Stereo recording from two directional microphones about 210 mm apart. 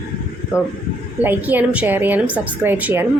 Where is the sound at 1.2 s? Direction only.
10° right (ahead or behind).